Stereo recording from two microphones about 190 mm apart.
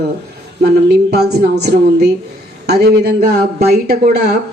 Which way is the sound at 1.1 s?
55° right (ahead or behind).